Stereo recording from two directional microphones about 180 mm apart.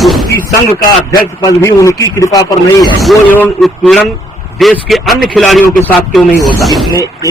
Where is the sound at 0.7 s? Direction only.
20° left (ahead or behind).